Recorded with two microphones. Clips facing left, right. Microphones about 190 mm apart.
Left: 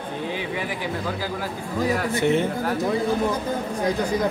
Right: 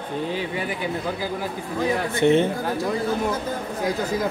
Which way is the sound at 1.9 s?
25° right (ahead or behind).